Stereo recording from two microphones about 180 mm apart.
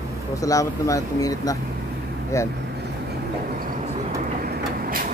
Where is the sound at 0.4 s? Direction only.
20° left (ahead or behind).